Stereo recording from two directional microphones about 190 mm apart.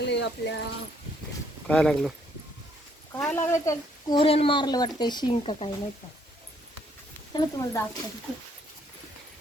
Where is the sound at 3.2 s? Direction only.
10° left (ahead or behind); by 5.7 s 30° left (ahead or behind).